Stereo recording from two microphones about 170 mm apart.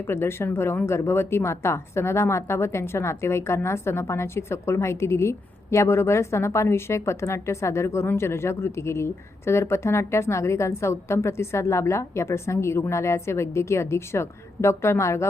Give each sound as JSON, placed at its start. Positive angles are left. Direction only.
{"t": 0.1, "sound": "speech", "side_deg": 15}